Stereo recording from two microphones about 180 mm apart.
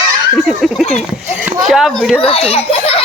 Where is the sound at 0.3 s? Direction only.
Centre (ahead or behind).